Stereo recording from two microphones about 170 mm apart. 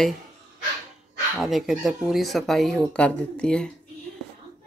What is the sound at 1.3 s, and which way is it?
Speech, centre (ahead or behind).